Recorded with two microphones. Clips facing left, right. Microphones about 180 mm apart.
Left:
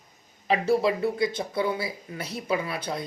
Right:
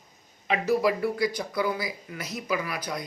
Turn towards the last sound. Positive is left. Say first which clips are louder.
# left 2 dB
turn(degrees=30)  # may be behind; listen again after turning